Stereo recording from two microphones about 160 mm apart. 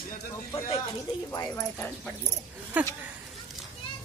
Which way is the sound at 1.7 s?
10° left (ahead or behind).